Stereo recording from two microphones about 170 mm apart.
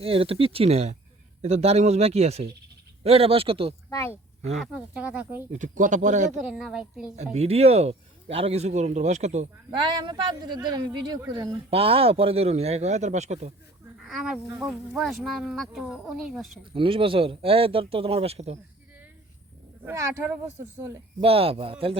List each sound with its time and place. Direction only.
0.0 s speech: 35° right (ahead or behind)
3.8 s speech: 15° left (ahead or behind)
4.6 s speech: 5° right (ahead or behind)
5.5 s speech: 50° right (ahead or behind)
6.5 s speech: 5° right (ahead or behind)
7.3 s speech: 35° right (ahead or behind)
9.6 s a man's voice: 25° right (ahead or behind)
11.7 s speech: 35° right (ahead or behind)
14.0 s speech: centre (ahead or behind)
16.7 s speech: 30° right (ahead or behind)
19.8 s speech: 15° right (ahead or behind)
21.2 s speech: 35° right (ahead or behind)